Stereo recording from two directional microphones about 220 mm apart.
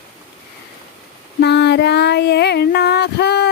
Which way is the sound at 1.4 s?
50° left (ahead or behind).